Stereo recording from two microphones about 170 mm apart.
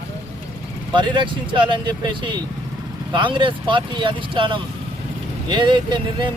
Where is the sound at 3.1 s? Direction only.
30° right (ahead or behind).